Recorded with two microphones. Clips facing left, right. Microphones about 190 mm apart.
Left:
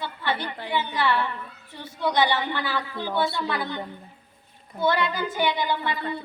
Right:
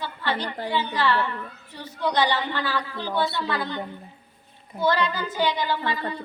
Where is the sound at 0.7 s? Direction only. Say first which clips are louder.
Even; 15° left (ahead or behind).